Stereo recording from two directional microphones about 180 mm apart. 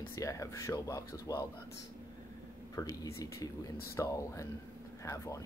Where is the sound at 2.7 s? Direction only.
20° left (ahead or behind).